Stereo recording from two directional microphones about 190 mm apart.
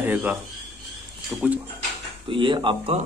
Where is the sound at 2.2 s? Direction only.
25° right (ahead or behind).